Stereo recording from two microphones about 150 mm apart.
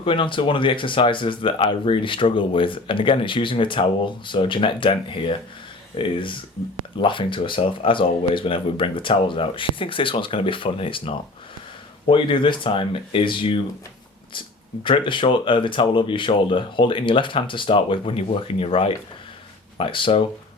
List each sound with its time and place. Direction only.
0.0 s speech: 35° left (ahead or behind)
14.8 s speech: 35° left (ahead or behind)